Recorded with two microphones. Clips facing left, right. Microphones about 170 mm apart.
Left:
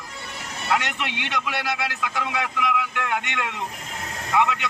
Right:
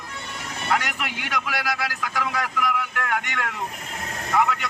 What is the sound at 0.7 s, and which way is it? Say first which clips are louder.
Speech: left 1 dB; 5° right (ahead or behind).